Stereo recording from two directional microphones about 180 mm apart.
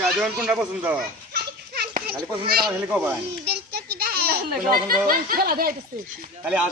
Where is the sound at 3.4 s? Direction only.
60° right (ahead or behind).